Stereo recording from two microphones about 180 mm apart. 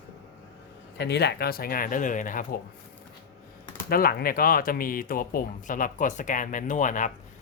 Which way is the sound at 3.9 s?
55° left (ahead or behind).